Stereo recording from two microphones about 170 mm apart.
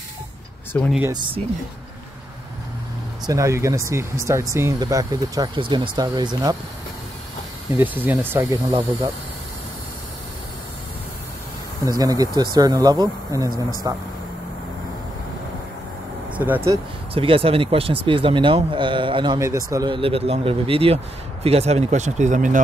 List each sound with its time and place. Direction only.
0.7 s speech: 10° left (ahead or behind)
1.1 s speech: 30° right (ahead or behind)
3.3 s speech: 15° right (ahead or behind)
7.7 s speech: 10° right (ahead or behind)
11.8 s speech: 20° right (ahead or behind)
16.3 s speech: 10° right (ahead or behind)
17.1 s speech: 30° right (ahead or behind); by 22.6 s 45° right (ahead or behind)